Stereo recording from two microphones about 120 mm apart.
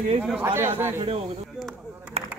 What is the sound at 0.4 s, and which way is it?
Speech, 20° right (ahead or behind).